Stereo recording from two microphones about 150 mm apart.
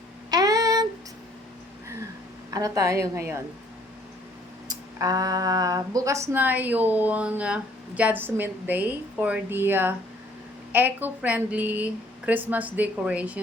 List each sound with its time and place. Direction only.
0.3 s a sound: 25° right (ahead or behind)
2.5 s a woman's voice: 25° right (ahead or behind)
4.7 s speech: 25° right (ahead or behind); by 13.4 s 10° right (ahead or behind)